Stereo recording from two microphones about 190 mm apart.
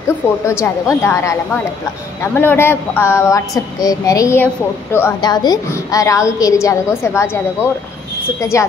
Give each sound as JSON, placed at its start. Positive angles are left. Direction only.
{"t": 0.5, "sound": "a woman's voice", "side_deg": 15}
{"t": 2.3, "sound": "a woman's voice", "side_deg": 10}